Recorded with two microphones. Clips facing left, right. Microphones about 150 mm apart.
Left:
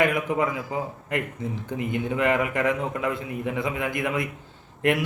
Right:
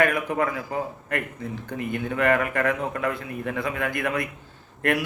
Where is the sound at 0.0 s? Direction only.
20° left (ahead or behind).